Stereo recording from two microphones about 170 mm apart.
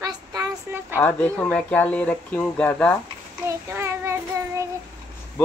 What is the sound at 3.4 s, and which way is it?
Child singing, 15° right (ahead or behind).